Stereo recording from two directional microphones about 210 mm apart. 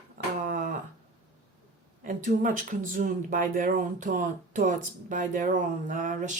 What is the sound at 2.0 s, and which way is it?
Speech, 40° right (ahead or behind).